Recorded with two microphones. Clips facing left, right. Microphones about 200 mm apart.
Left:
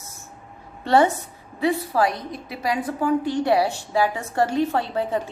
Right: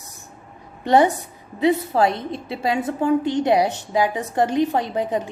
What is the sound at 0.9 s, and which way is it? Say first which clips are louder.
A woman's voice: right 2 dB; 15° right (ahead or behind).